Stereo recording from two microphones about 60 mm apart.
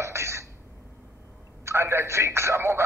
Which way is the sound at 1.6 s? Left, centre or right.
Right.